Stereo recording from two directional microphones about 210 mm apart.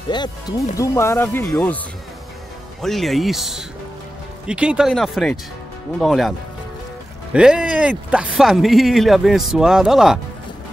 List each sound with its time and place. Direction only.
0.1 s speech: 20° left (ahead or behind)
2.8 s speech: centre (ahead or behind)
7.3 s speech: 5° right (ahead or behind)